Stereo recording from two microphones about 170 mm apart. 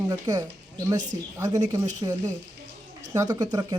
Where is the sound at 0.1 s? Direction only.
20° right (ahead or behind).